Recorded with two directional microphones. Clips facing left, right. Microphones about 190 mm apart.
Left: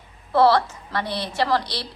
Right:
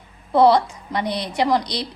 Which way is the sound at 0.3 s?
15° right (ahead or behind).